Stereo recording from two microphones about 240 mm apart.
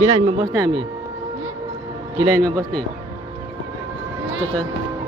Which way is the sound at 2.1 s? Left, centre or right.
Centre.